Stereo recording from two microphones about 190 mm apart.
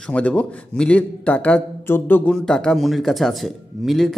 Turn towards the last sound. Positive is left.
turn(degrees=0)  # may be behind; listen again after turning